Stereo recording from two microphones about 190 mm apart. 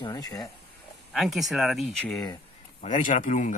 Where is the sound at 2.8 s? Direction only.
40° left (ahead or behind).